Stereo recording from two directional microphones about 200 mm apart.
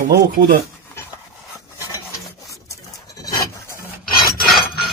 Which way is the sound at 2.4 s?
15° left (ahead or behind).